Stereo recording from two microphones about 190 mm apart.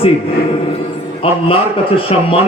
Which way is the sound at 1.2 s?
30° left (ahead or behind).